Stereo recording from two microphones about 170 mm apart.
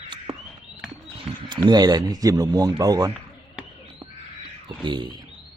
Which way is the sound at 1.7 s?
25° right (ahead or behind).